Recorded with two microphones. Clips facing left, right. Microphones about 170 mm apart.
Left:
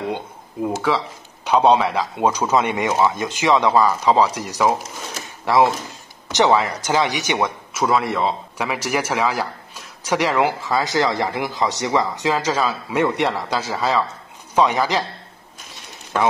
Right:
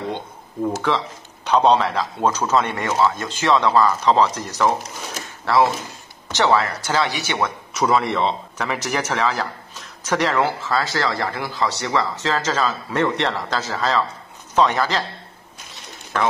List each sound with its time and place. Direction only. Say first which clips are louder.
0.7 s a man's voice: left 1 dB; 5° left (ahead or behind)
7.7 s a man's voice: right 1 dB; centre (ahead or behind)